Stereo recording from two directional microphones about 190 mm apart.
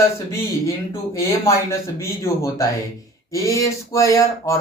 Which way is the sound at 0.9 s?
15° left (ahead or behind).